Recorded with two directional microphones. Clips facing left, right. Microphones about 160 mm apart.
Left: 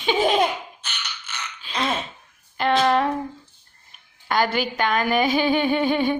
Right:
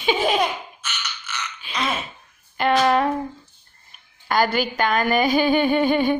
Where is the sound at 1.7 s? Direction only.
30° left (ahead or behind).